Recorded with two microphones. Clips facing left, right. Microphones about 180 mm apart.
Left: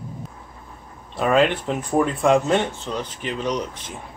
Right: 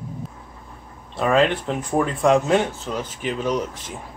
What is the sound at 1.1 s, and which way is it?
Speech, centre (ahead or behind).